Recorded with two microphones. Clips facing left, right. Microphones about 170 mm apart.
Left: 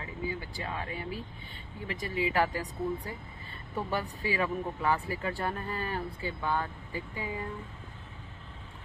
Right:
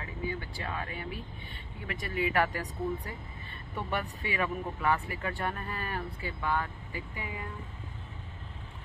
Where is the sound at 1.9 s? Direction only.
30° left (ahead or behind).